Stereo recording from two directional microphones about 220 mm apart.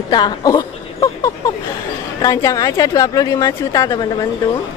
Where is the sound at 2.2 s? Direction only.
15° left (ahead or behind).